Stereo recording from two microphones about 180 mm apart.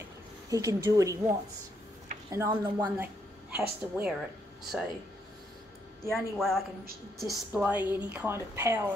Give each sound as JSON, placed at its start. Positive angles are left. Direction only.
{"t": 0.5, "sound": "speech", "side_deg": -20}
{"t": 2.3, "sound": "speech", "side_deg": -15}
{"t": 6.0, "sound": "a woman's voice", "side_deg": 0}